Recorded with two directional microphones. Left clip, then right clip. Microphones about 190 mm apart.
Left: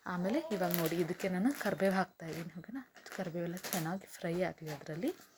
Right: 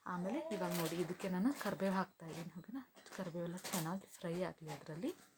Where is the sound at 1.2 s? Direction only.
10° left (ahead or behind).